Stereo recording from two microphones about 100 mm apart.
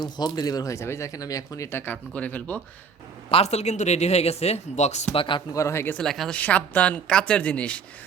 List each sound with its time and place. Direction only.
0.0 s speech: 45° left (ahead or behind)
1.8 s a woman's voice: 15° left (ahead or behind)
3.2 s speech: 80° left
5.1 s speech: 55° left (ahead or behind)
5.5 s speech: 30° left (ahead or behind)
5.9 s a woman's voice: 5° left (ahead or behind)